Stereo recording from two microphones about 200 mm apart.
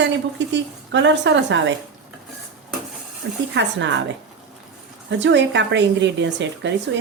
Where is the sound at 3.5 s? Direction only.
65° right (ahead or behind).